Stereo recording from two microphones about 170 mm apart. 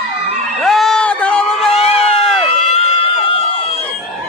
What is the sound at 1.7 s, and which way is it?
Run, 40° left (ahead or behind).